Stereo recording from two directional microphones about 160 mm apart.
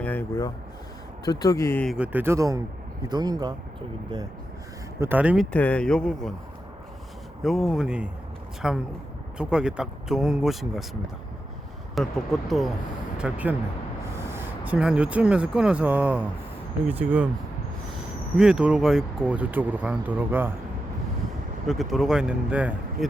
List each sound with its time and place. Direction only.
0.0 s speech: 10° left (ahead or behind)
2.0 s speech: 15° right (ahead or behind)
4.9 s speech: 10° right (ahead or behind)
5.5 s speech: 10° left (ahead or behind)
7.4 s speech: centre (ahead or behind)
11.9 s speech: centre (ahead or behind)
18.3 s speech: 5° right (ahead or behind)
21.7 s speech: centre (ahead or behind)